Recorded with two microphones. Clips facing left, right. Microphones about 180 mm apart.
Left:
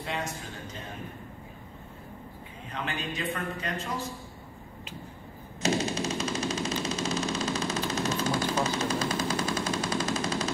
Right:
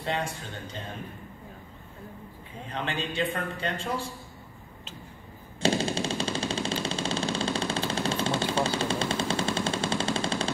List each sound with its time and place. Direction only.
0.0 s a man's voice: 30° right (ahead or behind)
2.7 s a man's voice: 30° right (ahead or behind)
5.6 s machine gun: 30° right (ahead or behind)